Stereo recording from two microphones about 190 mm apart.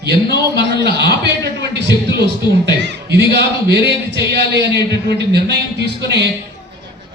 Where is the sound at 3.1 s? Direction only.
60° right (ahead or behind).